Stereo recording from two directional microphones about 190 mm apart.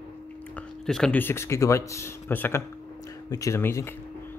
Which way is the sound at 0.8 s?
5° left (ahead or behind).